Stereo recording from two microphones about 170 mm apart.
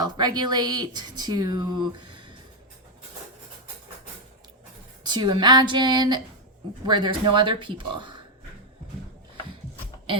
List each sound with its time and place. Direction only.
0.0 s speech: 25° right (ahead or behind)
5.0 s speech: 25° right (ahead or behind)